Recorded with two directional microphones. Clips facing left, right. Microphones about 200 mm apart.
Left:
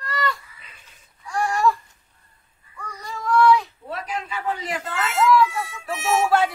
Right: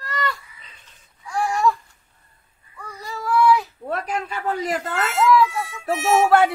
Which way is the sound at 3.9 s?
50° right (ahead or behind).